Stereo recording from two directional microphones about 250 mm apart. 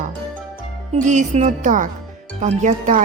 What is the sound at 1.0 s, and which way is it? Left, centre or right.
Speech, right.